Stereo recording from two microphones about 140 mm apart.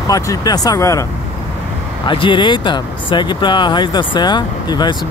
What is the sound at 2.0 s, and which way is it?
Speech, 35° left (ahead or behind).